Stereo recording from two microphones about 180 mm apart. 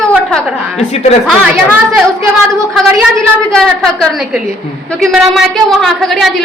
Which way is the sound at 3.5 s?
5° left (ahead or behind).